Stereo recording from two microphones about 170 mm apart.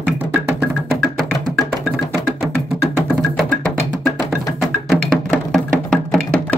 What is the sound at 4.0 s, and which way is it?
Music, centre (ahead or behind).